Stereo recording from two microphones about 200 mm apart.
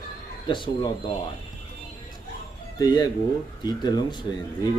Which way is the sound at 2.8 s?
20° left (ahead or behind).